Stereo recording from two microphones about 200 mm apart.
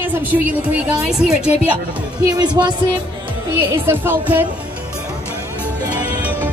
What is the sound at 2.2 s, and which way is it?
Music, 20° right (ahead or behind).